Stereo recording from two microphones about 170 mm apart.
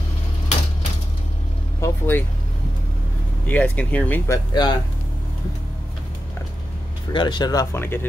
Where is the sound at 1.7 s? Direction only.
15° left (ahead or behind).